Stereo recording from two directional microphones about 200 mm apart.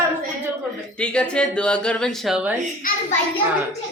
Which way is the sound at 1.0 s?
5° left (ahead or behind).